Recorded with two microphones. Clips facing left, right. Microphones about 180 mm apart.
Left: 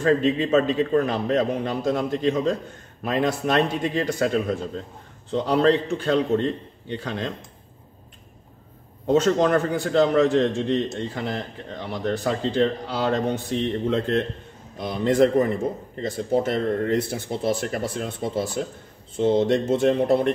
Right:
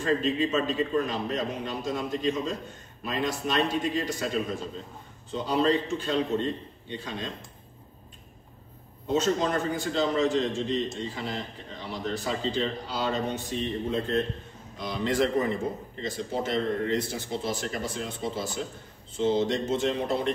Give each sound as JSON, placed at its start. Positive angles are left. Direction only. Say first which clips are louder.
{"t": 0.0, "sound": "a man's voice", "louder": "left 5 dB", "side_deg": 60}
{"t": 5.3, "sound": "a man's voice", "louder": "left 5 dB", "side_deg": 70}
{"t": 9.0, "sound": "a man's voice", "louder": "left 6 dB", "side_deg": 65}
{"t": 14.8, "sound": "a man's voice", "louder": "left 7 dB", "side_deg": 50}